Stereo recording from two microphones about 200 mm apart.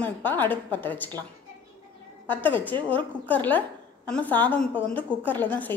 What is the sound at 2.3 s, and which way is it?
A woman's voice, 10° left (ahead or behind).